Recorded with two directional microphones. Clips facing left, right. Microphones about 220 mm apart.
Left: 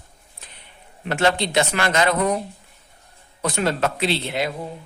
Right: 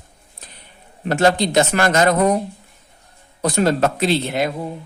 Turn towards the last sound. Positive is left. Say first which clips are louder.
# right 4 dB
turn(degrees=-45)  # may be behind; listen again after turning